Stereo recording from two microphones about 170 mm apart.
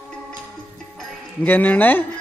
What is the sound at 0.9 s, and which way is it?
Music, 10° left (ahead or behind).